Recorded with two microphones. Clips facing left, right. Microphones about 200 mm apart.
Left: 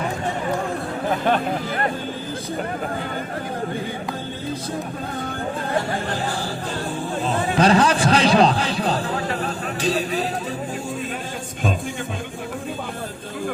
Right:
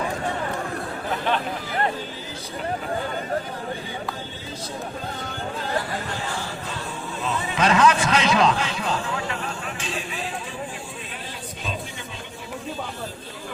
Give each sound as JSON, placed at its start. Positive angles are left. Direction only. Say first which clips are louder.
{"t": 1.1, "sound": "speech", "louder": "left 4 dB", "side_deg": 45}
{"t": 5.9, "sound": "speech", "louder": "left 5 dB", "side_deg": 35}
{"t": 7.5, "sound": "a man's voice", "louder": "left 2 dB", "side_deg": 35}